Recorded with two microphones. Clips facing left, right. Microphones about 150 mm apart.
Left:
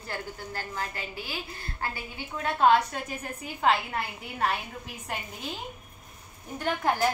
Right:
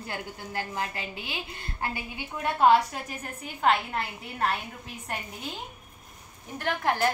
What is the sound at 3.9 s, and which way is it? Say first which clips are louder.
Speech: even; centre (ahead or behind).